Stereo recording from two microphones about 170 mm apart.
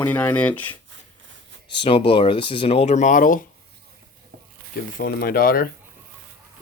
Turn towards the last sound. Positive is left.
turn(degrees=60)  # may be behind; listen again after turning